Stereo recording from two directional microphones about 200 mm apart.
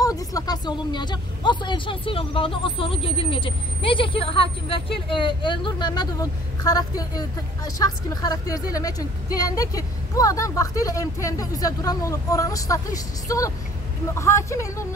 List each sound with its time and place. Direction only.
0.0 s speech: 15° left (ahead or behind)